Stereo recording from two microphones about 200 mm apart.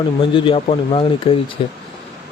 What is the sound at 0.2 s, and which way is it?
Speech, 25° left (ahead or behind).